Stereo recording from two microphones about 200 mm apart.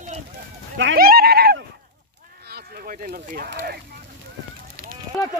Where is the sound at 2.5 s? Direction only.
50° right (ahead or behind).